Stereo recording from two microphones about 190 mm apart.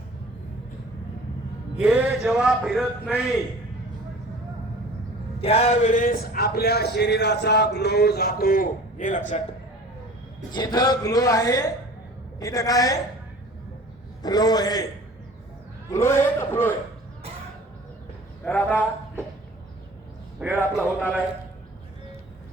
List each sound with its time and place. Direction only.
1.8 s speech: 5° right (ahead or behind)
5.4 s speech: 30° left (ahead or behind)
10.5 s speech: 20° left (ahead or behind)
14.2 s speech: 20° left (ahead or behind)
15.9 s speech: 15° left (ahead or behind)
18.4 s speech: 10° left (ahead or behind)
20.4 s a man's voice: 10° right (ahead or behind)